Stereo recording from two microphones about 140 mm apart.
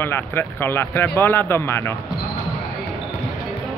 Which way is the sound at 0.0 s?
15° left (ahead or behind).